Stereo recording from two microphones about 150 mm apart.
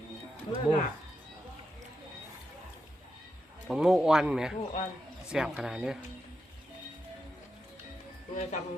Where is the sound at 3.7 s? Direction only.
5° right (ahead or behind).